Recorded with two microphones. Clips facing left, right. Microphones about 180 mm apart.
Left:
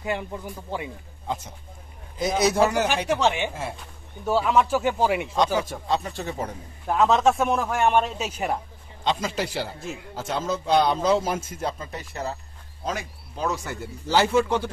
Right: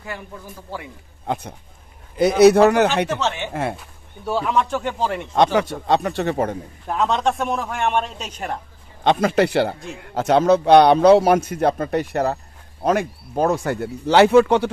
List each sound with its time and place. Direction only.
1.2 s speech: 60° right (ahead or behind)
3.1 s speech: 15° left (ahead or behind)
3.8 s a man's voice: centre (ahead or behind)
5.3 s speech: 70° right (ahead or behind)
6.9 s a man's voice: centre (ahead or behind)
9.0 s speech: 60° right (ahead or behind)